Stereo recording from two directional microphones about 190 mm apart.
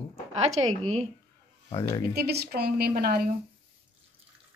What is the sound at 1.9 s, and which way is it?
A woman's voice, 55° right (ahead or behind).